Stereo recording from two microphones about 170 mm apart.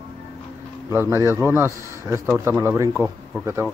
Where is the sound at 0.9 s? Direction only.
15° right (ahead or behind).